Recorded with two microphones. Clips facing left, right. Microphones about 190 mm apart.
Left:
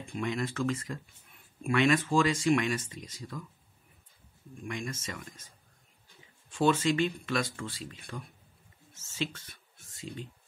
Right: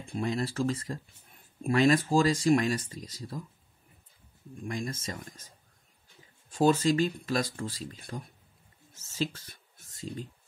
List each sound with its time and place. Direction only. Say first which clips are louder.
0.0 s speech: right 2 dB; 35° right (ahead or behind)
4.6 s speech: right 2 dB; 35° right (ahead or behind)
6.5 s speech: right 2 dB; 40° right (ahead or behind)
8.9 s a sound: right 3 dB; 40° right (ahead or behind)